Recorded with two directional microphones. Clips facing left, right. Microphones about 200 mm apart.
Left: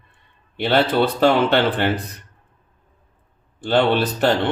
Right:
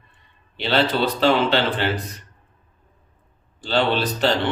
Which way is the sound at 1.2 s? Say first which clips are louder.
Left 2 dB; 50° left (ahead or behind).